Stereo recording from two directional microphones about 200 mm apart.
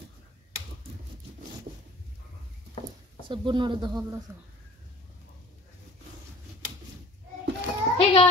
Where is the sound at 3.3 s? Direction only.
25° right (ahead or behind).